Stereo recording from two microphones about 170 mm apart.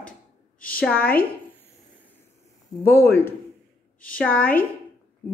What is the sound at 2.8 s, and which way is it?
A woman's voice, 15° left (ahead or behind).